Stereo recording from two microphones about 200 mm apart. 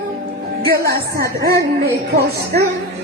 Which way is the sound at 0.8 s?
50° right (ahead or behind).